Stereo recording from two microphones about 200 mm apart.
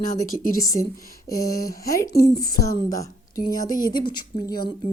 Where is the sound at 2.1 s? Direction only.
50° left (ahead or behind).